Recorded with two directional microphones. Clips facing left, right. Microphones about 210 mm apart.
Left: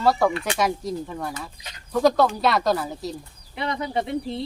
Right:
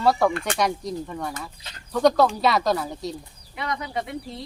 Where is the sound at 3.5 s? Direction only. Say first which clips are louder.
Left 3 dB; 30° left (ahead or behind).